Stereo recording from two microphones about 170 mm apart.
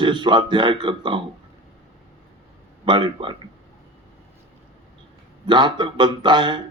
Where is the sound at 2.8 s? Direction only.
30° right (ahead or behind).